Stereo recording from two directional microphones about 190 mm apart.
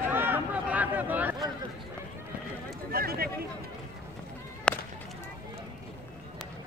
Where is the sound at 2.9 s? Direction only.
50° right (ahead or behind).